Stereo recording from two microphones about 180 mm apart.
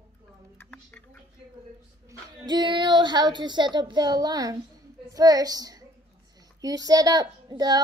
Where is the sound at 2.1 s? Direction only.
25° right (ahead or behind).